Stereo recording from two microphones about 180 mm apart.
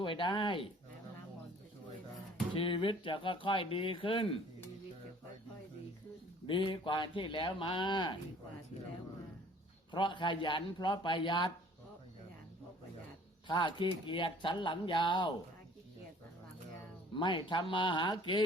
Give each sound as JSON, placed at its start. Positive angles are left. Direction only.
{"t": 0.0, "sound": "speech", "side_deg": 25}
{"t": 2.6, "sound": "speech", "side_deg": 30}
{"t": 6.5, "sound": "speech", "side_deg": 25}
{"t": 9.9, "sound": "speech", "side_deg": 25}
{"t": 13.5, "sound": "speech", "side_deg": 25}
{"t": 17.2, "sound": "speech", "side_deg": 25}